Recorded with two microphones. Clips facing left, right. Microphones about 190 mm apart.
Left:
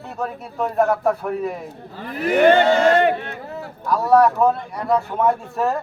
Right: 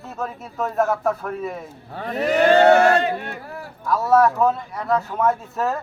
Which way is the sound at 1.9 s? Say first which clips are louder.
Right 3 dB; 65° right (ahead or behind).